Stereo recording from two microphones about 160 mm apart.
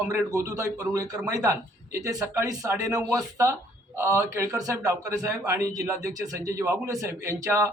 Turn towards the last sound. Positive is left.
turn(degrees=-20)  # may be behind; listen again after turning